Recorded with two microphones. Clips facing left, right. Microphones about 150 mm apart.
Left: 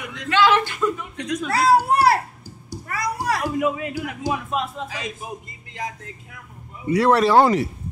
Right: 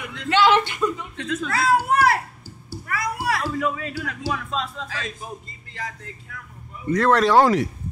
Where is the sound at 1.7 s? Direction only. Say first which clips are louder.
Left 2 dB; 35° left (ahead or behind).